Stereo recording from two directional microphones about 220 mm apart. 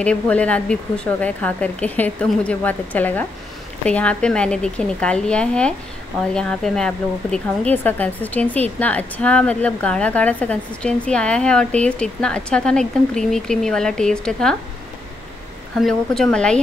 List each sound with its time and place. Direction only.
0.0 s a woman's voice: 5° left (ahead or behind)
15.8 s a woman's voice: centre (ahead or behind)